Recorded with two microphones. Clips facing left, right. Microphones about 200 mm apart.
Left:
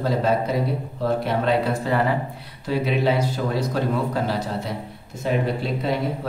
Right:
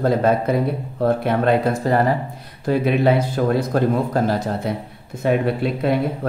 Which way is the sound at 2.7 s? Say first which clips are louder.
Right 4 dB; 55° right (ahead or behind).